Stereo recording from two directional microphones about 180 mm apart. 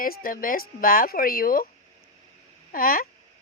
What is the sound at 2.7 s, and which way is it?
Speech, 55° left (ahead or behind).